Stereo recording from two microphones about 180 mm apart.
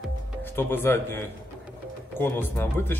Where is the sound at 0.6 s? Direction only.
10° left (ahead or behind).